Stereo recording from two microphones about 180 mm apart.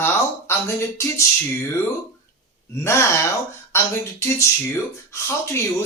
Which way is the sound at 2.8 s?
15° left (ahead or behind).